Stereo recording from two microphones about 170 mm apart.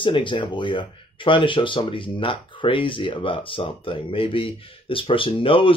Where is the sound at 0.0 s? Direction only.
30° left (ahead or behind).